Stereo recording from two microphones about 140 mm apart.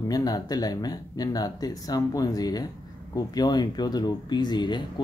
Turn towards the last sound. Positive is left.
turn(degrees=30)  # may be behind; listen again after turning